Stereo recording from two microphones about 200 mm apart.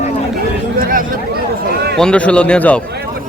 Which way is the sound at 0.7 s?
45° right (ahead or behind).